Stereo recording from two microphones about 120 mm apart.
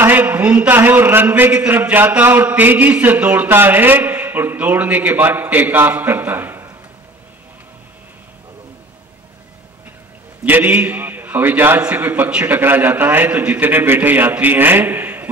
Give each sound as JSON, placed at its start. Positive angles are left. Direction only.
{"t": 0.0, "sound": "a man's voice", "side_deg": -15}
{"t": 10.4, "sound": "a man's voice", "side_deg": -15}